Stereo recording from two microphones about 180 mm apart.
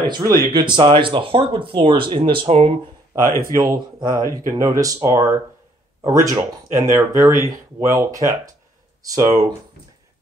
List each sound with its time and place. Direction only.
0.0 s speech: 25° right (ahead or behind)
3.5 s speech: 20° right (ahead or behind)